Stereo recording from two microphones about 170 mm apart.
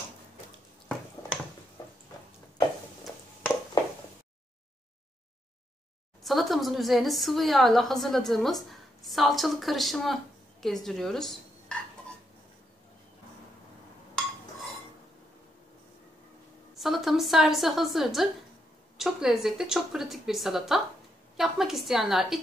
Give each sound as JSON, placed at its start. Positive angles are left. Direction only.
{"t": 6.2, "sound": "a woman's voice", "side_deg": 0}
{"t": 11.7, "sound": "a sound", "side_deg": 5}
{"t": 16.7, "sound": "a woman's voice", "side_deg": 0}